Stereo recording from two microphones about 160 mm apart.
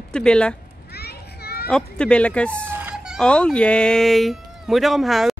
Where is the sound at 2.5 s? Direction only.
15° right (ahead or behind).